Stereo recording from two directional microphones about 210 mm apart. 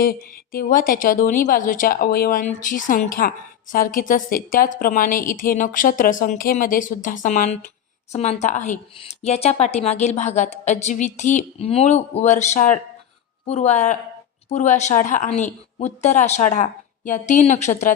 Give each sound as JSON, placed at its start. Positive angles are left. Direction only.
{"t": 0.0, "sound": "a woman's voice", "side_deg": 45}